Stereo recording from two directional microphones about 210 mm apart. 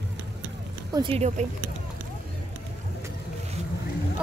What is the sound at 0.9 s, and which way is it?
Speech, 25° right (ahead or behind).